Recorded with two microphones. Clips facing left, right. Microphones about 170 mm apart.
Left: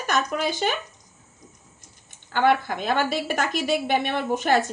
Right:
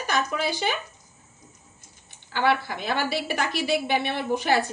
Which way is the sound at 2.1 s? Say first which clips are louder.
Left 3 dB; 50° left (ahead or behind).